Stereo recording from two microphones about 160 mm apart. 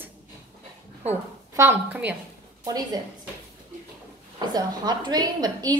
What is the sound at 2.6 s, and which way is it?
Speech, 25° right (ahead or behind).